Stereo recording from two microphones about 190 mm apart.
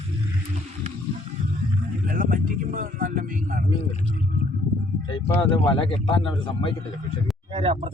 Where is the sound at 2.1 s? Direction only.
45° right (ahead or behind).